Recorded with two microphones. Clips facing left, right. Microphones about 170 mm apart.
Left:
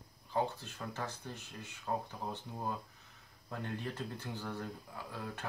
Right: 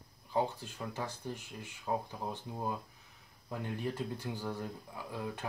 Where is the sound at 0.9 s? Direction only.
10° right (ahead or behind).